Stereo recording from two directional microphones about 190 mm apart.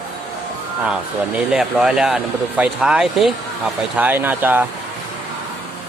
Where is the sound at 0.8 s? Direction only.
5° right (ahead or behind).